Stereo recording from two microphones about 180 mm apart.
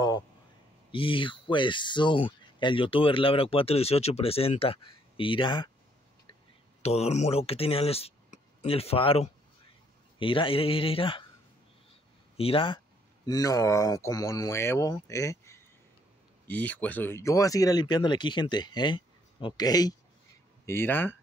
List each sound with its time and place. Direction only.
0.9 s speech: 30° left (ahead or behind)
6.8 s speech: 35° left (ahead or behind)
12.4 s speech: 30° left (ahead or behind); by 21.2 s 10° left (ahead or behind)